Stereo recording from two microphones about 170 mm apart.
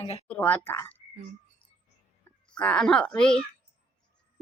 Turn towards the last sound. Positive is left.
turn(degrees=5)  # may be behind; listen again after turning